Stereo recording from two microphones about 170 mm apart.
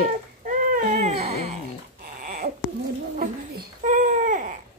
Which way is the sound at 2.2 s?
50° right (ahead or behind).